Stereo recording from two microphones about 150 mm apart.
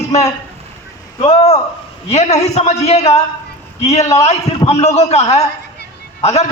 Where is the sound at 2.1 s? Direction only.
45° left (ahead or behind).